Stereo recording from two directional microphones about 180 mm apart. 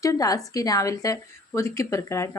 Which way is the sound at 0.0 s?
20° left (ahead or behind).